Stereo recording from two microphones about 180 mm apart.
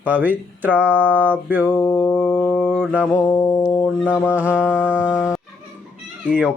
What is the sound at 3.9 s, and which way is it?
Music, 10° left (ahead or behind).